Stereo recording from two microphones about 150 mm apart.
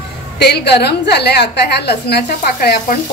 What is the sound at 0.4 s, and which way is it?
A woman's voice, 90° left.